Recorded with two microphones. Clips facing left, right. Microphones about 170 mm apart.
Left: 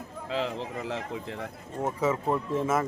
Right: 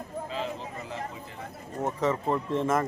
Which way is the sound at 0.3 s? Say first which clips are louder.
Left 7 dB; 75° left (ahead or behind).